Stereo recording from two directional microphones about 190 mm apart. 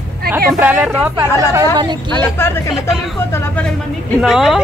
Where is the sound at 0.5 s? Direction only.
5° right (ahead or behind); by 2.1 s 20° right (ahead or behind).